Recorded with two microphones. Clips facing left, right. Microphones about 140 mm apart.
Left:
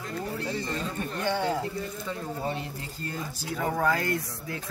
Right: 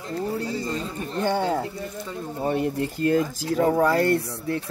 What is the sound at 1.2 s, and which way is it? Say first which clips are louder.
Speech: right 5 dB; 50° right (ahead or behind).